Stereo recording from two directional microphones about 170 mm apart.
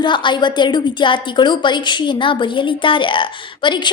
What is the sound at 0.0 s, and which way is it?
A woman's voice, 30° left (ahead or behind).